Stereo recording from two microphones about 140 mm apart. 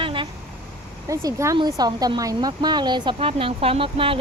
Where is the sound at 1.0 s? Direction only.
20° right (ahead or behind); by 4.1 s 40° right (ahead or behind).